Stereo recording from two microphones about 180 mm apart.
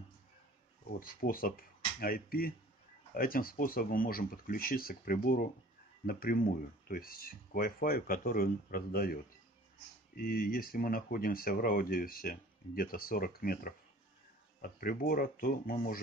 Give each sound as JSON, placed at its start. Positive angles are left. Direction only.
{"t": 0.9, "sound": "speech", "side_deg": 55}